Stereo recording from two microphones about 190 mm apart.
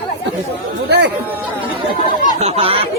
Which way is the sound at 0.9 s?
60° right (ahead or behind).